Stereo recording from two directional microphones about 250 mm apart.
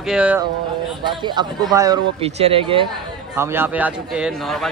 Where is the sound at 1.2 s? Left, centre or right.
Centre.